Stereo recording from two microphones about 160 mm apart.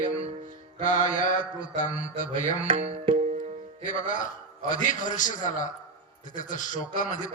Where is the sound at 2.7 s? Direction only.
40° right (ahead or behind).